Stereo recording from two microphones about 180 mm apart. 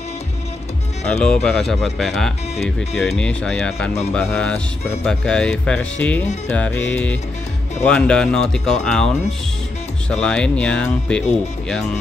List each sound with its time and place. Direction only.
1.0 s speech: 5° left (ahead or behind)
10.2 s speech: 5° left (ahead or behind)